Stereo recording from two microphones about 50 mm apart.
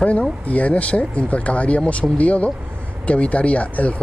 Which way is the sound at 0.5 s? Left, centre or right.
Left.